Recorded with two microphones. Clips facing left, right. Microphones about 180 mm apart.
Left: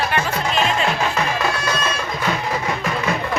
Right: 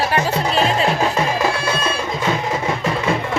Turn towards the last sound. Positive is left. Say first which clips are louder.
# right 3 dB
turn(degrees=-25)  # may be behind; listen again after turning